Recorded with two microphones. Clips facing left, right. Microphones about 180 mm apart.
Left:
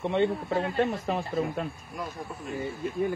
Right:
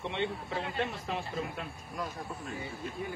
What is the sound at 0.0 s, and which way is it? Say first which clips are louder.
Speech: left 9 dB; 45° left (ahead or behind).